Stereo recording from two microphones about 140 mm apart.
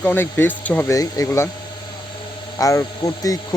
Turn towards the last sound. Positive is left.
turn(degrees=25)  # may be behind; listen again after turning